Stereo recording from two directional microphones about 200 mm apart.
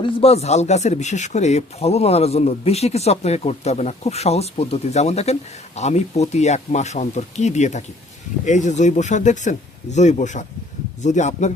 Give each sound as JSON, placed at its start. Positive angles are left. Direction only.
{"t": 0.0, "sound": "a man's voice", "side_deg": 30}